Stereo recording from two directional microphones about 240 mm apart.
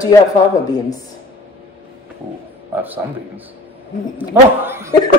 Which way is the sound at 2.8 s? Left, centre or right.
Centre.